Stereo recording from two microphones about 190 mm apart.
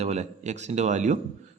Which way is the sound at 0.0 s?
35° right (ahead or behind).